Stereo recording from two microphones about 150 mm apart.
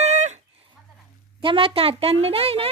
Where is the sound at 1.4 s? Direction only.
35° right (ahead or behind).